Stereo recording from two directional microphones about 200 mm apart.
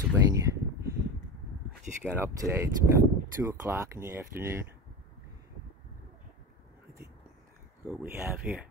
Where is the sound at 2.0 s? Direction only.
10° right (ahead or behind).